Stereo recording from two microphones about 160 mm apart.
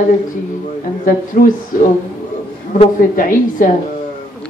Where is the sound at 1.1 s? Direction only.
60° left (ahead or behind).